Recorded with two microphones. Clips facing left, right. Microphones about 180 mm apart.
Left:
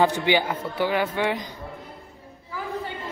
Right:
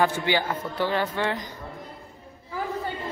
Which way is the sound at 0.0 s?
15° left (ahead or behind).